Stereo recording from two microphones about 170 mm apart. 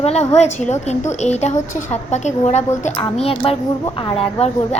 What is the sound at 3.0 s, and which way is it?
Speech, 35° left (ahead or behind).